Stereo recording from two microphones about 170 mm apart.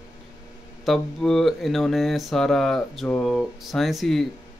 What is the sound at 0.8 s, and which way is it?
Mantra, centre (ahead or behind).